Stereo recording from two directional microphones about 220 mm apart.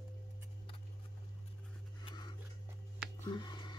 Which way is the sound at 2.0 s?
20° left (ahead or behind).